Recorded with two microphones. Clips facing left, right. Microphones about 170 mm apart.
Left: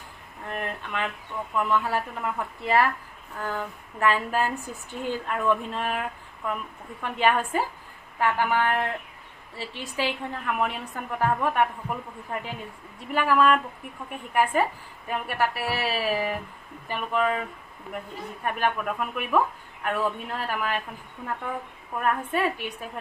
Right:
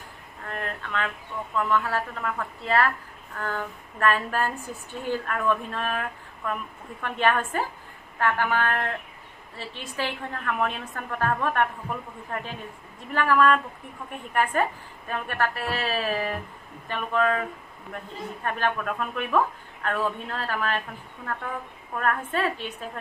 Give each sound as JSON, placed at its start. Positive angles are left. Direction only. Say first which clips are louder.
{"t": 0.5, "sound": "speech", "louder": "left 1 dB", "side_deg": 20}
{"t": 18.4, "sound": "speech", "louder": "left 1 dB", "side_deg": 15}
{"t": 22.0, "sound": "speech", "louder": "left 1 dB", "side_deg": 15}